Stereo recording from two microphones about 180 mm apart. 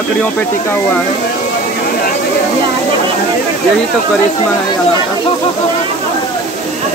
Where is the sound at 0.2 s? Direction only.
10° left (ahead or behind).